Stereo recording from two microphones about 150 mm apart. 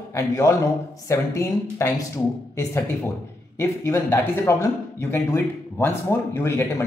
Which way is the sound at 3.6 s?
15° left (ahead or behind).